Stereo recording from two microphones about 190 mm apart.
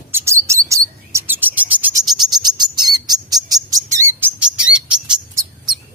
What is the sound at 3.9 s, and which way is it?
Bird vocalization, 10° right (ahead or behind).